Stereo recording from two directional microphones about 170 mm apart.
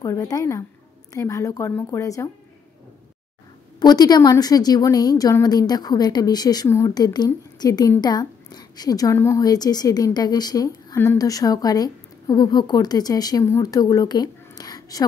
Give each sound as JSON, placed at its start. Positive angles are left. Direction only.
{"t": 0.0, "sound": "a woman's voice", "side_deg": 20}
{"t": 3.8, "sound": "a woman's voice", "side_deg": 25}